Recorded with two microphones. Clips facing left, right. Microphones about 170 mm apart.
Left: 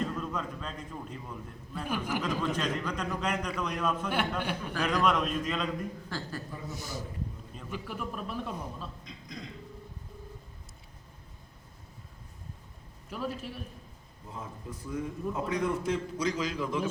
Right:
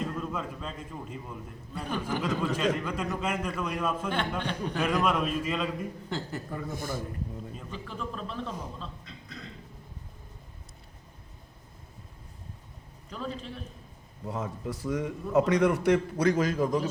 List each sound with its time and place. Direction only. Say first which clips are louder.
0.0 s a man's voice: even; 5° right (ahead or behind)
1.8 s speech: right 1 dB; 10° left (ahead or behind)
2.4 s a man's voice: right 3 dB; 5° right (ahead or behind)
6.1 s a woman's voice: right 3 dB; 20° right (ahead or behind)
6.5 s a man's voice: right 5 dB; 55° right (ahead or behind)
7.7 s speech: left 2 dB; 10° left (ahead or behind)
13.1 s speech: left 1 dB; 5° left (ahead or behind)
14.3 s a man's voice: right 8 dB; 75° right (ahead or behind); by 16.8 s 45° right (ahead or behind)